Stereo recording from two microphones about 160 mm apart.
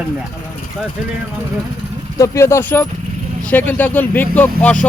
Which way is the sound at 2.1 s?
20° left (ahead or behind).